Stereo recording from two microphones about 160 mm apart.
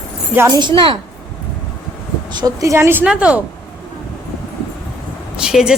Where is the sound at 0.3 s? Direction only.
25° right (ahead or behind).